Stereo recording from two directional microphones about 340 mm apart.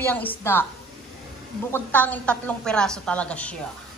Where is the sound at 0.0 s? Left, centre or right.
Centre.